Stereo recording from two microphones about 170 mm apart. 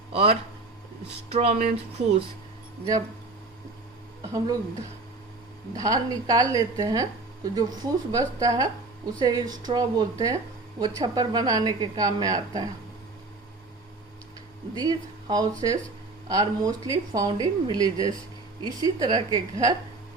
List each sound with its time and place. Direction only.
0.1 s speech: 35° right (ahead or behind)
5.7 s a woman's voice: 20° right (ahead or behind)
14.8 s a woman's voice: 25° right (ahead or behind)